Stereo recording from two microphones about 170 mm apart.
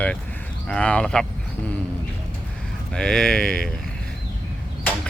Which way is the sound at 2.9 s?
5° left (ahead or behind).